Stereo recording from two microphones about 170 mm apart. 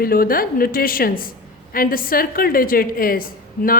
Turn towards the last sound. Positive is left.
turn(degrees=55)  # may be behind; listen again after turning